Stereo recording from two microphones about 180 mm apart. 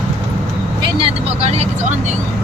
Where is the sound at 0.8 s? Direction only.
30° right (ahead or behind).